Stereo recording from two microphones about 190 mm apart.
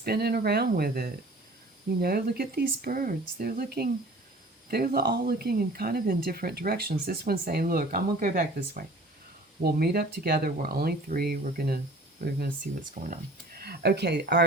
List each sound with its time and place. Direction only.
0.0 s speech: 55° right (ahead or behind)
9.6 s speech: 55° right (ahead or behind)